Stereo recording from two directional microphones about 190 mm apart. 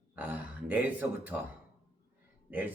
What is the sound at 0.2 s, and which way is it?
Speech, 5° right (ahead or behind).